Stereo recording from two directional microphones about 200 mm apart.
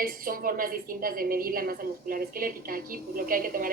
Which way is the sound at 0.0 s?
45° right (ahead or behind).